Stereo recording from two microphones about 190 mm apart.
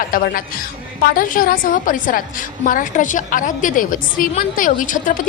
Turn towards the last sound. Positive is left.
turn(degrees=45)  # may be behind; listen again after turning